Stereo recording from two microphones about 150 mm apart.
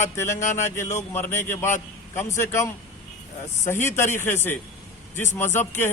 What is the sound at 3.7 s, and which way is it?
Speech, 15° left (ahead or behind).